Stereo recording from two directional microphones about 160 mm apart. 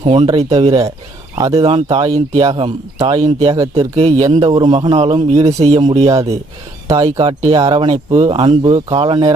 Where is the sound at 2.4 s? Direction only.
25° right (ahead or behind).